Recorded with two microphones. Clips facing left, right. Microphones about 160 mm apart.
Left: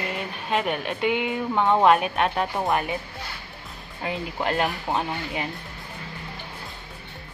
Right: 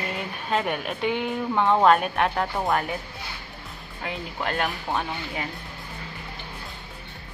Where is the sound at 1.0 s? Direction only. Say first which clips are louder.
Left 2 dB; 15° left (ahead or behind).